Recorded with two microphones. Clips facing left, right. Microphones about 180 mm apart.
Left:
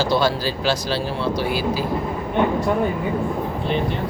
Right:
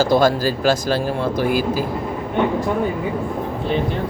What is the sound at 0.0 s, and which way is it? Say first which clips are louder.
Speech: right 4 dB; 45° right (ahead or behind).